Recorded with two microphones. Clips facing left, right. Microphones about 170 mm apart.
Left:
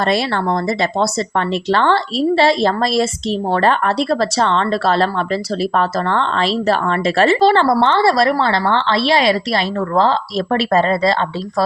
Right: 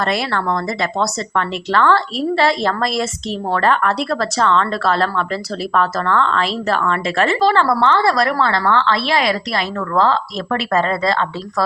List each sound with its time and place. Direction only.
0.1 s a woman's voice: 30° left (ahead or behind)